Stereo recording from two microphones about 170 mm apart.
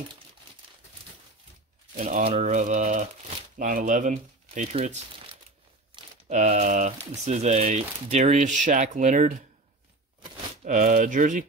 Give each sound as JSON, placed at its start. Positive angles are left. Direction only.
{"t": 2.0, "sound": "speech", "side_deg": -45}
{"t": 10.6, "sound": "speech", "side_deg": -50}